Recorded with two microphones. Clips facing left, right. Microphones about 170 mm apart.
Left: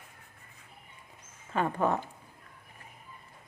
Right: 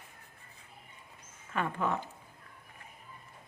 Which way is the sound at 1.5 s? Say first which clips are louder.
Left 4 dB; 35° left (ahead or behind).